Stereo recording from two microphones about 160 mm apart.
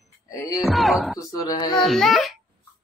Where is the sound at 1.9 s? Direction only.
Centre (ahead or behind).